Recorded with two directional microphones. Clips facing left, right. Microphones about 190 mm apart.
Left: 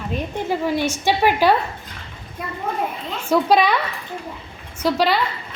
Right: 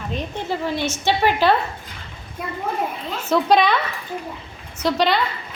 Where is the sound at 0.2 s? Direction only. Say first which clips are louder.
Left 3 dB; 10° left (ahead or behind).